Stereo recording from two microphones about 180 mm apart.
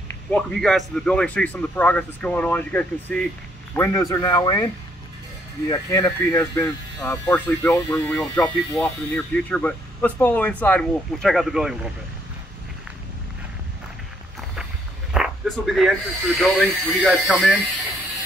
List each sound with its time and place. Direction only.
0.3 s speech: 5° left (ahead or behind); by 4.6 s 20° left (ahead or behind)
5.7 s speech: 20° left (ahead or behind); by 11.9 s 5° right (ahead or behind)
15.1 s speech: centre (ahead or behind)